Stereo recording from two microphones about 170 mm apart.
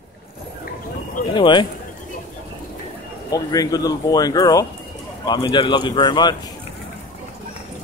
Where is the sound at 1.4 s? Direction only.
30° left (ahead or behind).